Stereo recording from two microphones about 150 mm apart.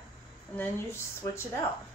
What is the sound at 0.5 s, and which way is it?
Speech, 15° left (ahead or behind).